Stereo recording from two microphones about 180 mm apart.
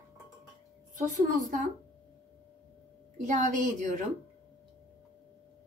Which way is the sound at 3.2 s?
45° right (ahead or behind).